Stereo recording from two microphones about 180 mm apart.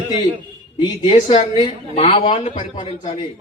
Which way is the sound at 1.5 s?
25° left (ahead or behind).